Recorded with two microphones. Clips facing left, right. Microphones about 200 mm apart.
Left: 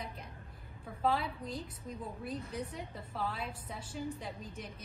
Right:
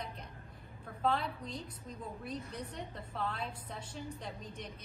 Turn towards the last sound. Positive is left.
turn(degrees=5)  # may be behind; listen again after turning